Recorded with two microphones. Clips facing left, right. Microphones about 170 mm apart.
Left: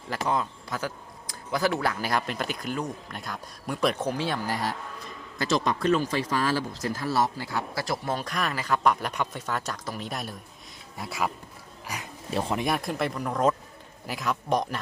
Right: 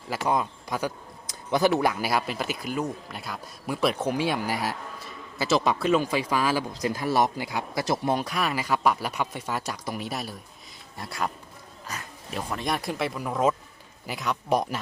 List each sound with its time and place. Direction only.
0.3 s a sound: 15° right (ahead or behind)
1.8 s speech: 10° right (ahead or behind)
11.9 s speech: 10° left (ahead or behind)
12.3 s speech: 30° left (ahead or behind)
12.5 s speech: 5° left (ahead or behind)